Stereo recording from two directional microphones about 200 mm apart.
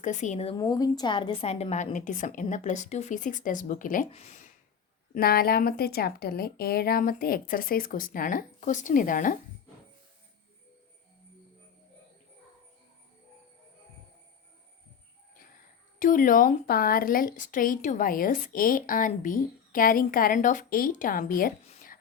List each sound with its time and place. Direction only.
0.0 s a woman's voice: 40° left (ahead or behind)
0.5 s a woman's voice: 20° left (ahead or behind); by 4.5 s 35° left (ahead or behind)
5.1 s speech: 50° left (ahead or behind)
16.0 s speech: 40° left (ahead or behind)